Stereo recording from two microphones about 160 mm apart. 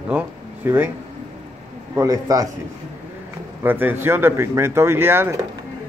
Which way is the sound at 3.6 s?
10° right (ahead or behind).